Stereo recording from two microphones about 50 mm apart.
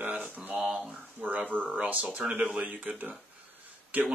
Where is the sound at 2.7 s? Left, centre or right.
Right.